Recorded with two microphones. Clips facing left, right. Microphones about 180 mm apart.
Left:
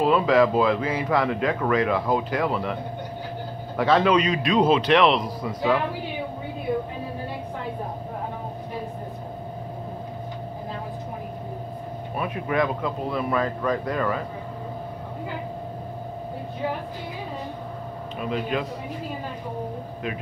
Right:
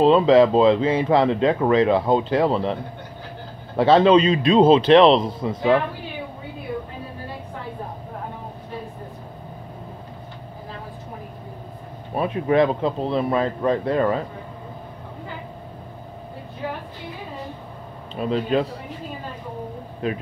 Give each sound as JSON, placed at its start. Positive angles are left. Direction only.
{"t": 0.0, "sound": "speech", "side_deg": -25}
{"t": 12.2, "sound": "speech", "side_deg": -30}
{"t": 18.1, "sound": "speech", "side_deg": -30}